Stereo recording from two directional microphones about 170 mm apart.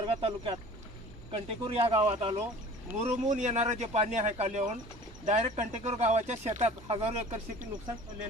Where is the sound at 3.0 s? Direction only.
45° right (ahead or behind).